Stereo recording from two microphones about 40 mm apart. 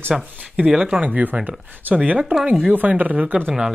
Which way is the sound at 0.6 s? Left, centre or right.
Centre.